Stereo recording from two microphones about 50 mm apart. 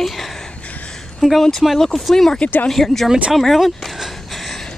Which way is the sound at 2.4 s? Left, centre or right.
Left.